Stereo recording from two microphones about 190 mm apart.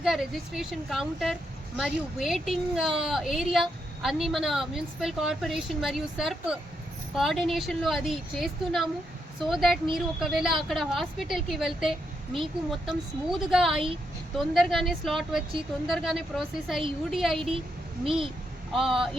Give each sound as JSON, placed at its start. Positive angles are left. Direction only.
{"t": 0.0, "sound": "speech", "side_deg": 0}
{"t": 18.0, "sound": "speech", "side_deg": -30}
{"t": 18.7, "sound": "speech", "side_deg": 0}